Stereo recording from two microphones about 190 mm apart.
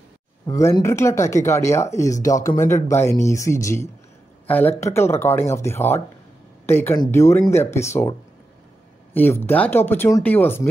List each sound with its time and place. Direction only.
0.5 s speech: 15° left (ahead or behind)
9.1 s speech: 10° left (ahead or behind)